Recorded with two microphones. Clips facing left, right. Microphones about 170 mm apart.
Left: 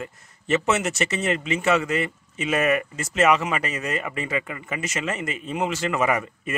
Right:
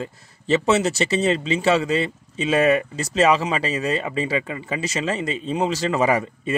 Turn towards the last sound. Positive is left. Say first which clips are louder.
# right 4 dB
turn(degrees=-30)  # may be behind; listen again after turning